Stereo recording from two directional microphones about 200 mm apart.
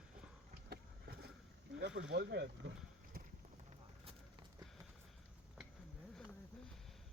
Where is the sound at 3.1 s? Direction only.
50° right (ahead or behind).